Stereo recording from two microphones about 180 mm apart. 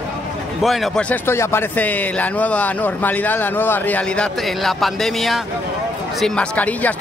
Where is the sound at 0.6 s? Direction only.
Centre (ahead or behind).